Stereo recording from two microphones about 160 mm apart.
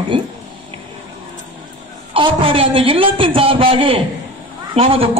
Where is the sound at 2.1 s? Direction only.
35° right (ahead or behind).